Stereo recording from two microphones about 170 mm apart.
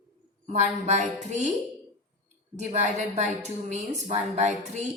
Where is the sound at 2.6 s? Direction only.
40° right (ahead or behind).